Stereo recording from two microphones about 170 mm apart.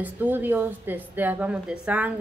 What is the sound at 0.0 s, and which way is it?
A woman's voice, 10° right (ahead or behind).